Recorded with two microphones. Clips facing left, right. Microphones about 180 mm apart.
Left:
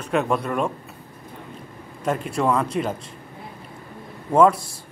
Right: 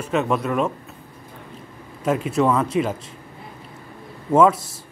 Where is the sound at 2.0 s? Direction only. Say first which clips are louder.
Right 3 dB; 5° right (ahead or behind).